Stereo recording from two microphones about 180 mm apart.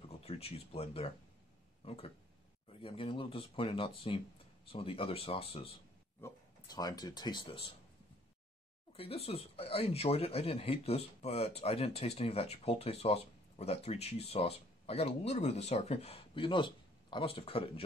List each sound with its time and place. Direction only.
0.2 s speech: 35° left (ahead or behind)
6.2 s speech: 20° left (ahead or behind)
8.9 s speech: 35° left (ahead or behind)